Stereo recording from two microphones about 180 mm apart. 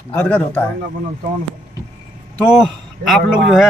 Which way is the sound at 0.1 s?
5° left (ahead or behind).